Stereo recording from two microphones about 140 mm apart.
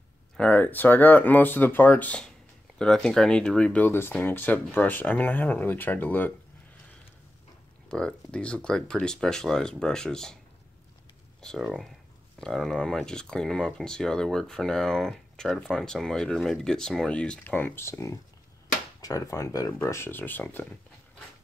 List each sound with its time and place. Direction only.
0.4 s speech: 10° left (ahead or behind)
7.9 s speech: 5° left (ahead or behind)
11.4 s speech: centre (ahead or behind)